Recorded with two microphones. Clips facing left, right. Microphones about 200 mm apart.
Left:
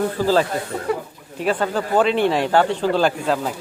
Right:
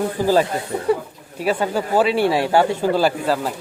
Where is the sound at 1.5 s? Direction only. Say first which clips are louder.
Right 1 dB; 10° right (ahead or behind).